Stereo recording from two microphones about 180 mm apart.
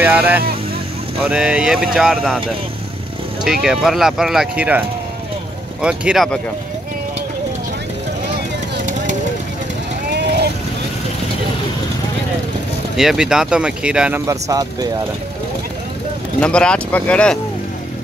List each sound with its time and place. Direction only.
0.0 s speech: 10° right (ahead or behind)
3.6 s speech: centre (ahead or behind)
10.1 s vehicle: 65° right (ahead or behind)
12.9 s speech: centre (ahead or behind)
14.2 s speech: 20° right (ahead or behind)
16.3 s speech: 5° left (ahead or behind)